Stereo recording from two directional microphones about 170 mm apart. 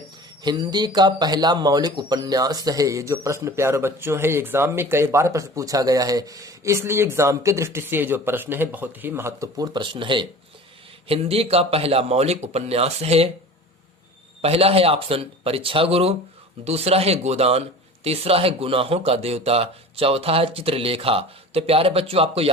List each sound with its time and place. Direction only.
0.4 s speech: 25° right (ahead or behind)
14.4 s speech: 35° right (ahead or behind)